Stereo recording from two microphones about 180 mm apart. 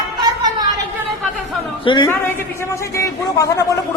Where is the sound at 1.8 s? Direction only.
25° left (ahead or behind).